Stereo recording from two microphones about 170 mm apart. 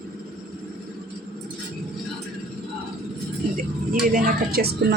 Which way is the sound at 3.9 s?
55° right (ahead or behind).